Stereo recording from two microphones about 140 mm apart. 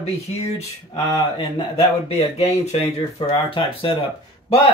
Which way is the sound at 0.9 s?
35° left (ahead or behind).